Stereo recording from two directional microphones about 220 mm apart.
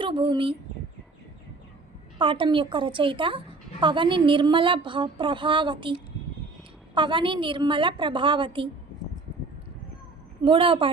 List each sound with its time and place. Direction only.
0.0 s speech: 20° right (ahead or behind)
2.1 s a woman's voice: 20° right (ahead or behind)
10.4 s a woman's voice: 20° right (ahead or behind)